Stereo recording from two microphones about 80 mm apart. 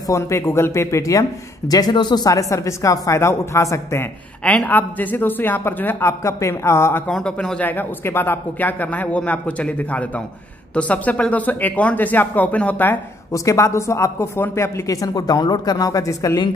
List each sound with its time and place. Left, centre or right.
0.1 s speech: left
1.7 s speech: left
4.5 s a man's voice: centre; by 7.0 s left
7.1 s speech: centre
7.7 s a man's voice: left
13.3 s speech: left
15.0 s a woman's voice: left